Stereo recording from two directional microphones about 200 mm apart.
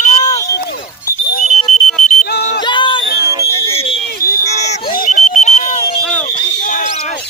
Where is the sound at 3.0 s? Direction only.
55° left (ahead or behind).